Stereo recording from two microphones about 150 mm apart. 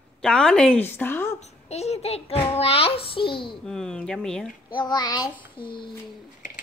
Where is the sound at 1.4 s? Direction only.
45° left (ahead or behind).